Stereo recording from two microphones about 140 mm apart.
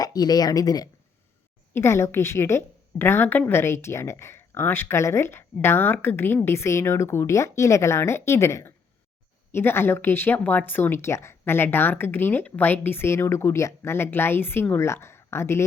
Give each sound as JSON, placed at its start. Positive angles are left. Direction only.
{"t": 0.0, "sound": "a woman's voice", "side_deg": 30}